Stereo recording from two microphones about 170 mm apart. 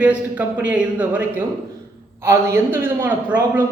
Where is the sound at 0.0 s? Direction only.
10° right (ahead or behind).